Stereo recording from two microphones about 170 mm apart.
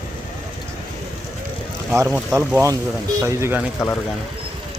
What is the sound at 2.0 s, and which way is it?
Speech, 10° right (ahead or behind).